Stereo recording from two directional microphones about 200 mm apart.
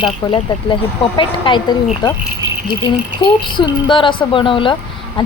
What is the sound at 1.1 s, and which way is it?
Speech, 25° left (ahead or behind).